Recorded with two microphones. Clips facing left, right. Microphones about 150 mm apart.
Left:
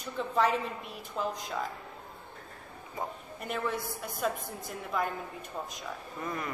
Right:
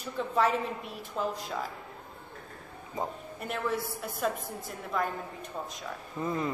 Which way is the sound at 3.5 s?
Centre (ahead or behind).